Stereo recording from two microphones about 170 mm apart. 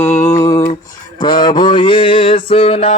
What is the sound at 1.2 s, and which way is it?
Mantra, 25° left (ahead or behind).